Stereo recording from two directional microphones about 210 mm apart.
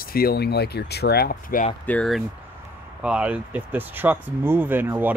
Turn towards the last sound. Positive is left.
turn(degrees=-10)  # may be behind; listen again after turning